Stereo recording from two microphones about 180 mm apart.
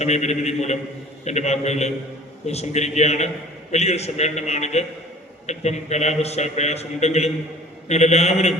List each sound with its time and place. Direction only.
0.0 s a man's voice: 40° left (ahead or behind)